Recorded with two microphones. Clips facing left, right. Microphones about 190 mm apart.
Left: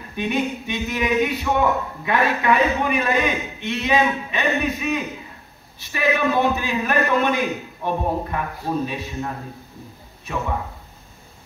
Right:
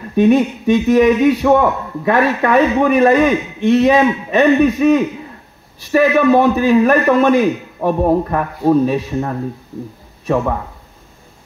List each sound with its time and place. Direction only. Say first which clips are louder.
0.1 s a man's voice: right 12 dB; 45° right (ahead or behind)